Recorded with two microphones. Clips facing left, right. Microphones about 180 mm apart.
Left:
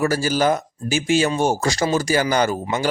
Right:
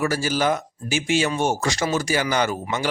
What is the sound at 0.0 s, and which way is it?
Speech, 40° left (ahead or behind).